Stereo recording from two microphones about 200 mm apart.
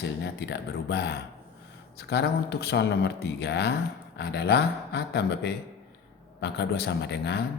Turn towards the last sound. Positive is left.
turn(degrees=60)  # may be behind; listen again after turning